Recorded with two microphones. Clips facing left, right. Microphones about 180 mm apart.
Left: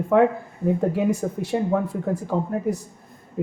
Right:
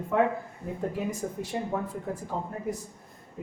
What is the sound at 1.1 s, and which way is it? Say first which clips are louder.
Speech: left 9 dB; 75° left (ahead or behind).